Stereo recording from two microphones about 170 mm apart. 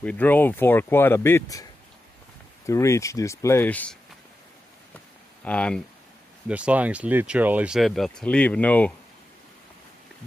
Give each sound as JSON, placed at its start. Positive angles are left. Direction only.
{"t": 0.0, "sound": "speech", "side_deg": 10}
{"t": 5.4, "sound": "speech", "side_deg": 5}
{"t": 6.5, "sound": "speech", "side_deg": -10}